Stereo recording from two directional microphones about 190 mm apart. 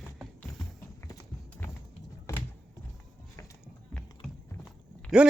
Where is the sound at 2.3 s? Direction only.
15° left (ahead or behind).